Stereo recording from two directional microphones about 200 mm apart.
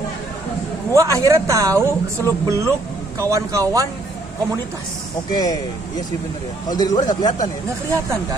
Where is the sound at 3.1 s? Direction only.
15° right (ahead or behind).